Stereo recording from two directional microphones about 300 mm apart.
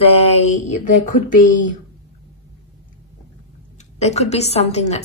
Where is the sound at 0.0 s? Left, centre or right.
Centre.